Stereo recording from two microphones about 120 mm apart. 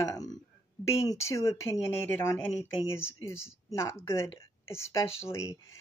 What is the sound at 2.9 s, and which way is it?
Speech, 20° left (ahead or behind).